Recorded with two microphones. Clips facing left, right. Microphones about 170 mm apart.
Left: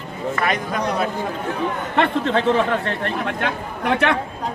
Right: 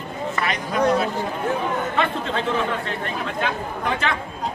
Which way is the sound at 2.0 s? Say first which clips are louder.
Left 5 dB; 65° left (ahead or behind).